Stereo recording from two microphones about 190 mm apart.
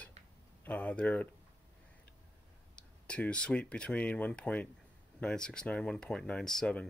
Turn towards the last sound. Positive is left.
turn(degrees=5)  # may be behind; listen again after turning